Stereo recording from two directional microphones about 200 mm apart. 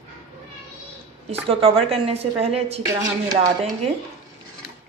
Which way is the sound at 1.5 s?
30° right (ahead or behind).